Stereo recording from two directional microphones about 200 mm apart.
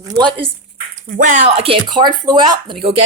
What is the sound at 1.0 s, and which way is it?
Speech, 40° right (ahead or behind).